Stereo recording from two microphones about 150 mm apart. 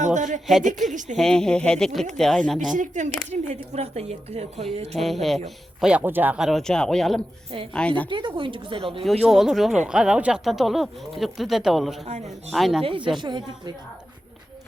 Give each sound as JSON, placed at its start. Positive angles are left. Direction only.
{"t": 0.0, "sound": "a woman's voice", "side_deg": -55}
{"t": 1.1, "sound": "speech", "side_deg": 5}
{"t": 2.7, "sound": "speech", "side_deg": -55}
{"t": 4.9, "sound": "speech", "side_deg": 0}
{"t": 5.8, "sound": "a woman's voice", "side_deg": -10}
{"t": 8.1, "sound": "speech", "side_deg": -35}
{"t": 9.2, "sound": "speech", "side_deg": 0}
{"t": 13.1, "sound": "speech", "side_deg": -30}